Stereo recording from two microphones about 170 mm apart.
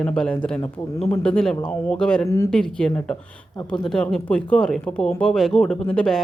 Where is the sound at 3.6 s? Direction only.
25° left (ahead or behind).